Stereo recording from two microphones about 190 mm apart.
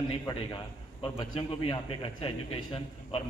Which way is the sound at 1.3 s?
25° left (ahead or behind).